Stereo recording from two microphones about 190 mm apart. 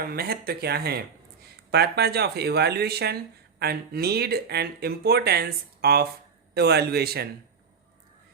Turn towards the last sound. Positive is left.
turn(degrees=-55)  # may be behind; listen again after turning